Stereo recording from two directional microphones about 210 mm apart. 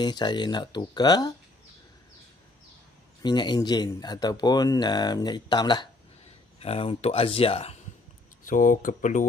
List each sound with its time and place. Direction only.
0.0 s speech: 20° left (ahead or behind)
3.2 s speech: 20° left (ahead or behind)
8.5 s speech: 40° left (ahead or behind)